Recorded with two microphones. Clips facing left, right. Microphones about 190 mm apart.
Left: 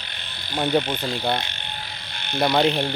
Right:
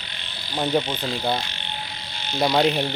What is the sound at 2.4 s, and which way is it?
Speech, centre (ahead or behind).